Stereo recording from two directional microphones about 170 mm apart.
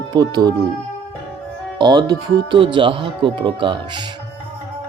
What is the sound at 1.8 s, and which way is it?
Speech, 25° right (ahead or behind).